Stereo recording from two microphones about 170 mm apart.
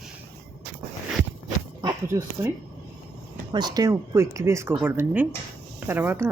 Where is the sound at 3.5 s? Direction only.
25° right (ahead or behind).